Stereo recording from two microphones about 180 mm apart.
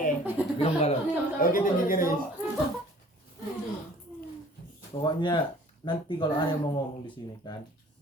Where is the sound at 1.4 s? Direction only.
50° left (ahead or behind).